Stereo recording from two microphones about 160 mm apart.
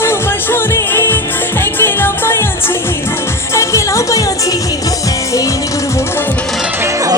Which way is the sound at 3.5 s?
20° left (ahead or behind).